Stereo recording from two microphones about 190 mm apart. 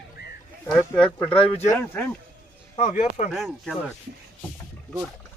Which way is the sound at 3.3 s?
Centre (ahead or behind).